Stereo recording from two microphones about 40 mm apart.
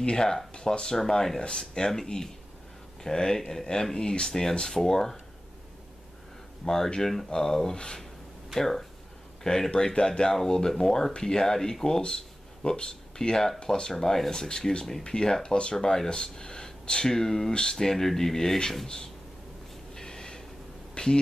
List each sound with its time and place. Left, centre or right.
0.0 s speech: centre
6.6 s speech: centre
15.7 s speech: centre
19.9 s a sound: centre